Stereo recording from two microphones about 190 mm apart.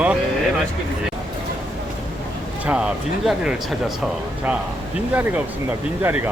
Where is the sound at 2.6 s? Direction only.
5° right (ahead or behind).